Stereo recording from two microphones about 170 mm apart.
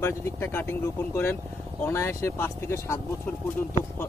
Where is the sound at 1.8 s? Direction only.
15° left (ahead or behind).